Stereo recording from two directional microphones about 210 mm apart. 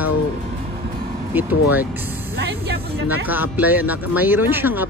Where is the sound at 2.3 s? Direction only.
50° right (ahead or behind).